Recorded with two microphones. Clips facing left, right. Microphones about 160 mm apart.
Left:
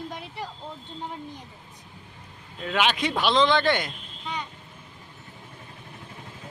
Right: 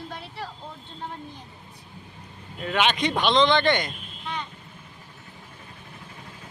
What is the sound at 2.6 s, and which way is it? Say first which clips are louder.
Speech: right 1 dB; centre (ahead or behind).